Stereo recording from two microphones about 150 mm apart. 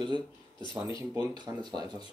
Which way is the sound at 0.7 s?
20° right (ahead or behind).